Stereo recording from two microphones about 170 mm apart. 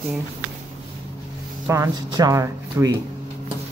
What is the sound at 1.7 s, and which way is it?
Speech, 20° right (ahead or behind).